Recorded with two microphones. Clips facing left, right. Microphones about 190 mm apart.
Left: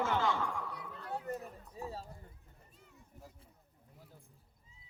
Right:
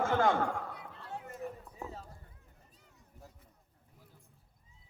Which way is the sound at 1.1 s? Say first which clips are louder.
Left 6 dB; 35° left (ahead or behind).